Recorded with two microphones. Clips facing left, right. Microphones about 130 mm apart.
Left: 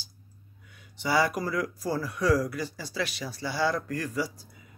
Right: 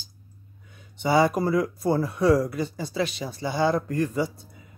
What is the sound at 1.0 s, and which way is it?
Speech, 25° right (ahead or behind).